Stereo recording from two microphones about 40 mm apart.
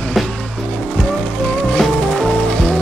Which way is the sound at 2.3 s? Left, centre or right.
Centre.